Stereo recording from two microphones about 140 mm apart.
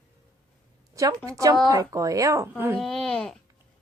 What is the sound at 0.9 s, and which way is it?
A woman's voice, 25° right (ahead or behind).